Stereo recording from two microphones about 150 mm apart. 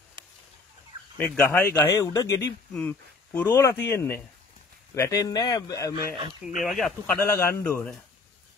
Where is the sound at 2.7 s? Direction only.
10° left (ahead or behind); by 5.9 s 25° left (ahead or behind).